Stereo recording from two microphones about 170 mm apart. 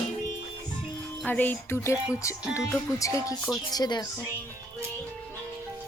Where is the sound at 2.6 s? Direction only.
20° left (ahead or behind).